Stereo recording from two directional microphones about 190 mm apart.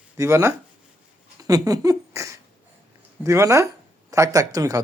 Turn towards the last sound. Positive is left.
turn(degrees=-20)  # may be behind; listen again after turning